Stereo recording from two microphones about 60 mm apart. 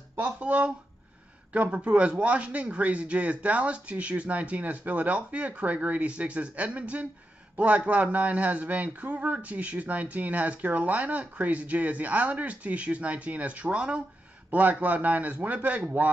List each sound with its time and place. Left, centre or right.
0.2 s speech: right